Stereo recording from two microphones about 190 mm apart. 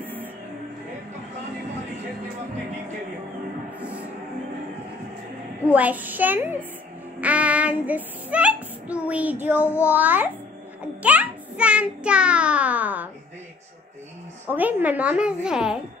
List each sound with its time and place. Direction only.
5.7 s speech: 10° right (ahead or behind)
9.6 s a child's voice: 10° left (ahead or behind)
9.8 s speech: 10° right (ahead or behind)
14.5 s speech: 10° right (ahead or behind)